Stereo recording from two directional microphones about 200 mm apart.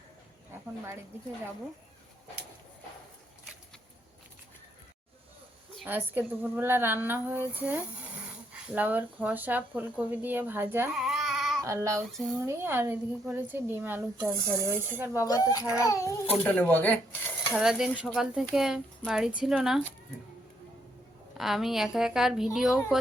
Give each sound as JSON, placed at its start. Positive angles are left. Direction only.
{"t": 5.7, "sound": "speech", "side_deg": -10}
{"t": 11.6, "sound": "speech", "side_deg": -15}
{"t": 12.1, "sound": "speech", "side_deg": 0}
{"t": 12.4, "sound": "speech", "side_deg": -10}
{"t": 15.2, "sound": "speech", "side_deg": 15}
{"t": 17.6, "sound": "speech", "side_deg": -5}
{"t": 21.3, "sound": "speech", "side_deg": 0}